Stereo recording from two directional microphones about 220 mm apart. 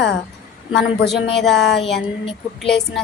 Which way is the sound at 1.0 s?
Centre (ahead or behind).